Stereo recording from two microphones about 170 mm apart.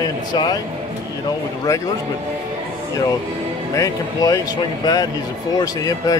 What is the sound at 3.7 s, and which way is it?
Speech, 20° left (ahead or behind).